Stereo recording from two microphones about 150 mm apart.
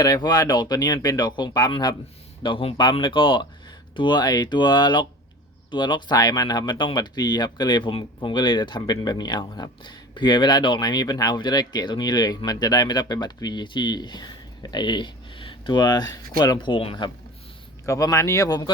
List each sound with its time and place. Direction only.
0.0 s speech: 25° left (ahead or behind)
17.8 s speech: 20° left (ahead or behind)